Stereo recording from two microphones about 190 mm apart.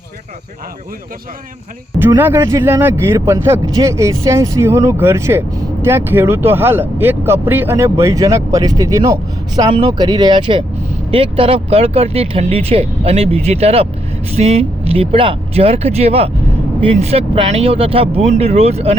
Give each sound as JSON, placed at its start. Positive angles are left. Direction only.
{"t": 2.0, "sound": "speech", "side_deg": -10}